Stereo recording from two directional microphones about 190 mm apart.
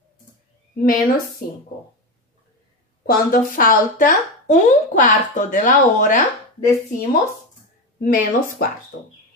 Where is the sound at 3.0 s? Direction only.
50° left (ahead or behind).